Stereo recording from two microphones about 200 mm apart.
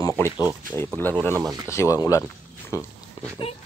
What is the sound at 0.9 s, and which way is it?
Speech, 10° left (ahead or behind).